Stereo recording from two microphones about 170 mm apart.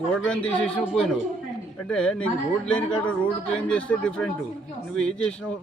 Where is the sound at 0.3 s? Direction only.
5° left (ahead or behind).